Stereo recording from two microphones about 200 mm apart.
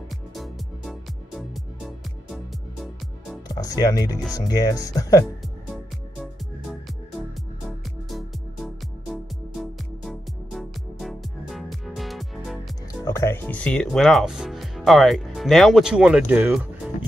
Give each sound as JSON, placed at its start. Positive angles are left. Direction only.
{"t": 0.4, "sound": "music", "side_deg": 0}
{"t": 3.4, "sound": "speech", "side_deg": 20}
{"t": 6.6, "sound": "music", "side_deg": 0}
{"t": 13.0, "sound": "speech", "side_deg": 15}